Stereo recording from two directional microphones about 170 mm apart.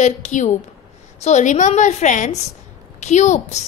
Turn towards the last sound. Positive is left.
turn(degrees=45)  # may be behind; listen again after turning